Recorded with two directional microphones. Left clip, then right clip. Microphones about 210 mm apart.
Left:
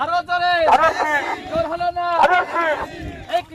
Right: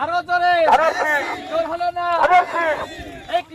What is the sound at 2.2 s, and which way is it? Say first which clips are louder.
Speech: right 4 dB; 45° left (ahead or behind).